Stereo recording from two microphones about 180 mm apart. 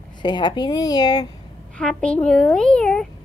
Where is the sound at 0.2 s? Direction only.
25° left (ahead or behind).